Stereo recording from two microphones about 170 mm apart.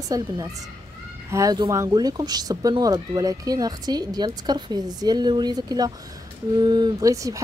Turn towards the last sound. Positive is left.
turn(degrees=-20)  # may be behind; listen again after turning